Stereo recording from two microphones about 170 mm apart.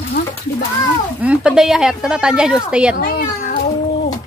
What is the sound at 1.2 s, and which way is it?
Speech, 5° right (ahead or behind).